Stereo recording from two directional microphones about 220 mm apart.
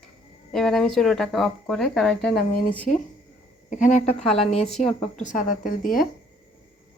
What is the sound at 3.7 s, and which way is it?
Speech, 35° left (ahead or behind).